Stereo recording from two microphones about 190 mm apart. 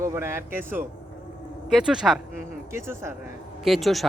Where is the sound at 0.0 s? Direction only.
15° right (ahead or behind).